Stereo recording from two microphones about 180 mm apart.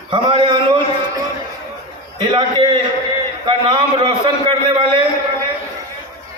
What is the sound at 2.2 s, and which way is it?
A man's voice, 25° right (ahead or behind).